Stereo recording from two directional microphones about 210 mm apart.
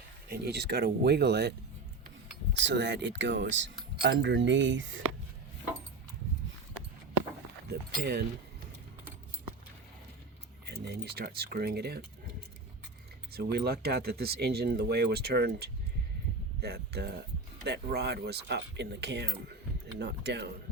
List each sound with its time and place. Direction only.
0.3 s speech: 50° right (ahead or behind)
7.7 s speech: 50° right (ahead or behind)
10.7 s speech: 50° right (ahead or behind)
13.3 s speech: 50° right (ahead or behind)